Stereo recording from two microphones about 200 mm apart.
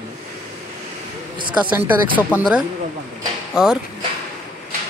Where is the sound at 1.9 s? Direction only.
10° right (ahead or behind).